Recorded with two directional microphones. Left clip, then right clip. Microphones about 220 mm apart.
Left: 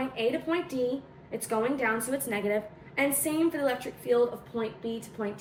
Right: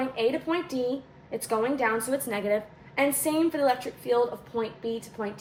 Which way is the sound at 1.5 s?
45° right (ahead or behind).